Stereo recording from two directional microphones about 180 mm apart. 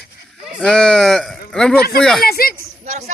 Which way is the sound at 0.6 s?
5° left (ahead or behind).